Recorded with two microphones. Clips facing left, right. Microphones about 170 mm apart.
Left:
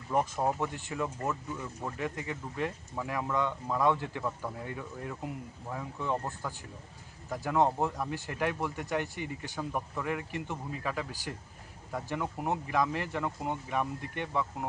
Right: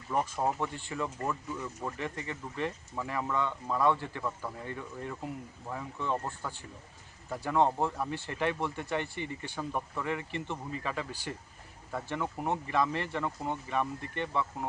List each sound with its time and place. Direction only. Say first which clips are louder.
0.2 s speech: left 1 dB; 10° left (ahead or behind)